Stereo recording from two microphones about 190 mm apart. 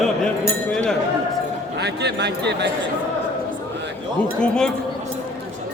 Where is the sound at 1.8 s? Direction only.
65° right (ahead or behind).